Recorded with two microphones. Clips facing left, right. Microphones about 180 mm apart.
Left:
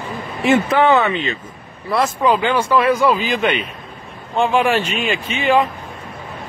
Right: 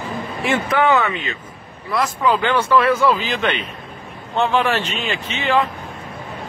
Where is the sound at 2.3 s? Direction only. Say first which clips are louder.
Right 1 dB; 10° left (ahead or behind).